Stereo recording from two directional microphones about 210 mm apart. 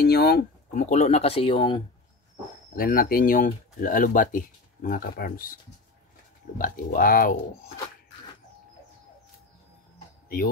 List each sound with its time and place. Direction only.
0.0 s a sound: 50° left (ahead or behind)
0.8 s speech: 30° left (ahead or behind)
2.7 s speech: 45° left (ahead or behind)
6.6 s speech: 40° left (ahead or behind)
10.2 s speech: 45° left (ahead or behind)